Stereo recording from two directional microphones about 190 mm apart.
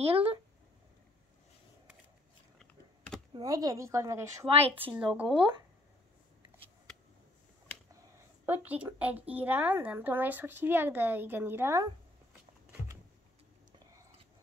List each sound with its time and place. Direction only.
3.3 s speech: 20° right (ahead or behind)
8.5 s speech: 10° right (ahead or behind)